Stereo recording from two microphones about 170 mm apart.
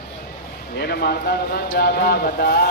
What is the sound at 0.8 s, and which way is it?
Speech, 65° left (ahead or behind).